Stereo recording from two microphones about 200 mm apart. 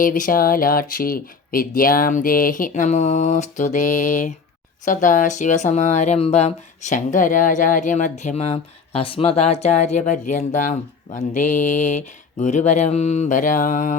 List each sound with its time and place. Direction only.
0.0 s speech: 45° left (ahead or behind)